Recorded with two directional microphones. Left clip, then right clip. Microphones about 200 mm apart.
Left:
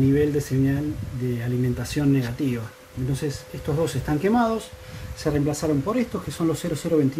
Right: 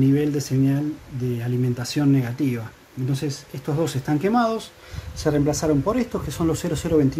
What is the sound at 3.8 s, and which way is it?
Speech, 5° right (ahead or behind).